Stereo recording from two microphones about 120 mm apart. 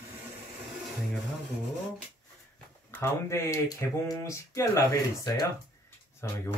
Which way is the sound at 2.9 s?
20° left (ahead or behind).